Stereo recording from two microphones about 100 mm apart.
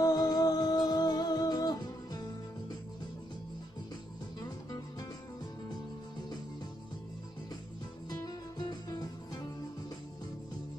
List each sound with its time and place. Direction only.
0.0 s music: 40° left (ahead or behind)
8.1 s music: 45° left (ahead or behind)